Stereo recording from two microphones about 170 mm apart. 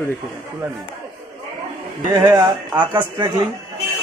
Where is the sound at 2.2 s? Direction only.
25° right (ahead or behind).